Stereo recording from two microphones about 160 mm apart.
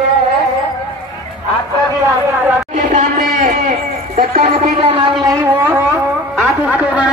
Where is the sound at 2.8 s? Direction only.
50° right (ahead or behind).